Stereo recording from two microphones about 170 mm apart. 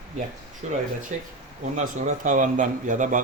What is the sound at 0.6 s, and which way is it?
A man's voice, 45° right (ahead or behind).